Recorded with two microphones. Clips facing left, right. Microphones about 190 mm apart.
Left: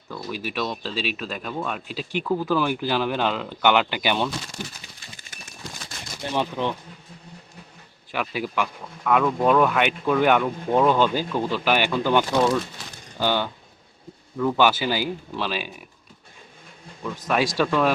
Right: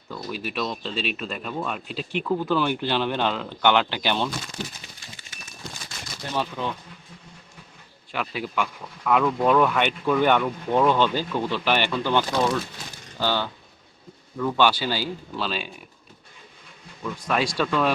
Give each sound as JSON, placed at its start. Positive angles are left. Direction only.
{"t": 0.1, "sound": "speech", "side_deg": 5}
{"t": 6.3, "sound": "speech", "side_deg": 20}
{"t": 8.1, "sound": "speech", "side_deg": 5}
{"t": 17.0, "sound": "speech", "side_deg": 5}